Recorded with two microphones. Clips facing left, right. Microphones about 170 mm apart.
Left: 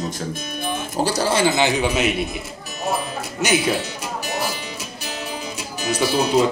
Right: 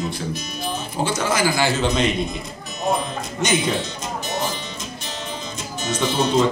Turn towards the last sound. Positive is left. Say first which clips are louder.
# left 1 dB
turn(degrees=10)  # may be behind; listen again after turning